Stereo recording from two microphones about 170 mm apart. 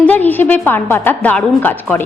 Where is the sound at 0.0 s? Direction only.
10° left (ahead or behind).